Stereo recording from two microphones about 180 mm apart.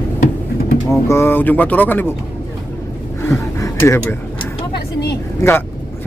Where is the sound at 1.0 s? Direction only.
15° left (ahead or behind).